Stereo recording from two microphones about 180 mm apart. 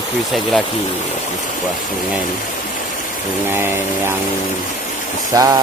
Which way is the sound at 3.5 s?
10° right (ahead or behind).